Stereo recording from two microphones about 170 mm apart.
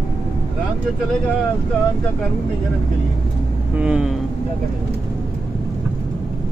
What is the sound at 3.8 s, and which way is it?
Speech, 5° right (ahead or behind).